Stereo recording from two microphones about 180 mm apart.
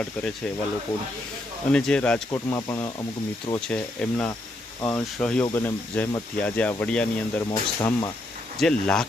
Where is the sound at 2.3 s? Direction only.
20° left (ahead or behind).